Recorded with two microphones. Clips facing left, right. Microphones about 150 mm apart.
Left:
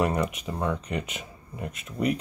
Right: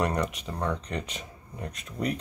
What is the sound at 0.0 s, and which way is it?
Speech, 5° left (ahead or behind).